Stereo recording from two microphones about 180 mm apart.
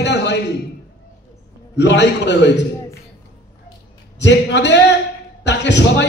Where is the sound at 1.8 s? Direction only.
75° left (ahead or behind).